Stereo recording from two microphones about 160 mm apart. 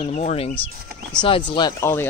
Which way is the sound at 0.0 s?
45° left (ahead or behind).